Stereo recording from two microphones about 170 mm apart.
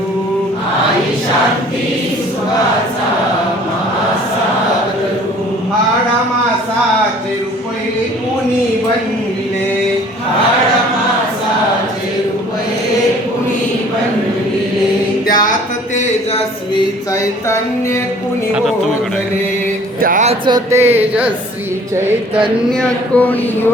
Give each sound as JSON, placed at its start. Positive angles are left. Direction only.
{"t": 15.3, "sound": "music", "side_deg": 55}
{"t": 20.0, "sound": "music", "side_deg": -55}
{"t": 20.2, "sound": "a sound", "side_deg": -30}
{"t": 20.7, "sound": "speech", "side_deg": -15}
{"t": 22.8, "sound": "speech", "side_deg": 10}